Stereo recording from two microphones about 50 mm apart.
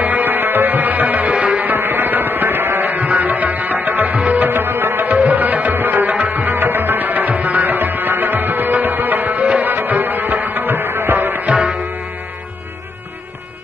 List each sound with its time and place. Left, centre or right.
0.0 s music: right
4.5 s music: right